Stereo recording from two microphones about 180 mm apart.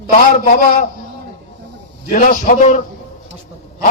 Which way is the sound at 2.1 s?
50° left (ahead or behind).